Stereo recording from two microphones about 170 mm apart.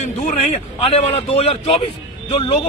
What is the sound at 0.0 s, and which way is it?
A man's voice, 40° left (ahead or behind).